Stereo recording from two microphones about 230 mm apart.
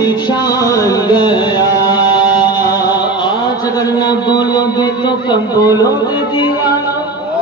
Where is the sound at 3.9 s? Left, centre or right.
Centre.